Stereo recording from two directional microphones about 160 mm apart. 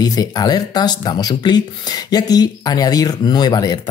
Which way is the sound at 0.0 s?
25° left (ahead or behind).